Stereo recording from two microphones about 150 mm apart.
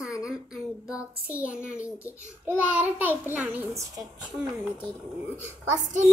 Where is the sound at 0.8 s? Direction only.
10° right (ahead or behind).